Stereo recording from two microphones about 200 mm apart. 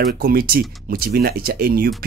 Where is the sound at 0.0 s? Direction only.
50° right (ahead or behind).